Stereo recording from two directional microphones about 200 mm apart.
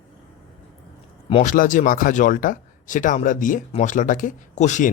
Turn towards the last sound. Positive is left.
turn(degrees=35)  # may be behind; listen again after turning